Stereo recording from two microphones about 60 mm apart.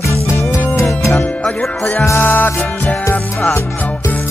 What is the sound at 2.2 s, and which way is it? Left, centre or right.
Music, left.